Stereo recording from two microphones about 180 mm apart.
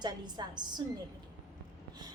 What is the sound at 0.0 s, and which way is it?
Speech, 25° right (ahead or behind).